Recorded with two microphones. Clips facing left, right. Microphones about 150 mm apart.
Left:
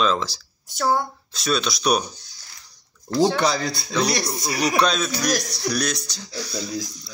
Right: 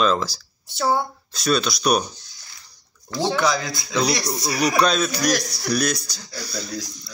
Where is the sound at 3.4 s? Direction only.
30° left (ahead or behind).